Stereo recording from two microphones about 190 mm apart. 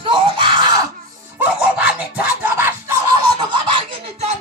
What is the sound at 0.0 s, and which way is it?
Screaming, 25° right (ahead or behind).